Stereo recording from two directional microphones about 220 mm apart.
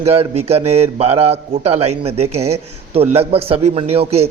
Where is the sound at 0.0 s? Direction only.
25° right (ahead or behind).